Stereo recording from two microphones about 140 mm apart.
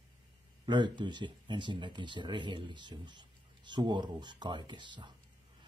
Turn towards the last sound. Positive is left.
turn(degrees=-35)  # may be behind; listen again after turning